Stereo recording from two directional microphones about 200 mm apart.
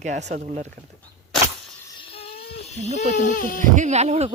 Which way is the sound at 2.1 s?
30° left (ahead or behind).